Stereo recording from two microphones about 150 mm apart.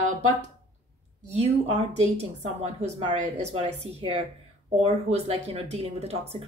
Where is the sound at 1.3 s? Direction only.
45° right (ahead or behind).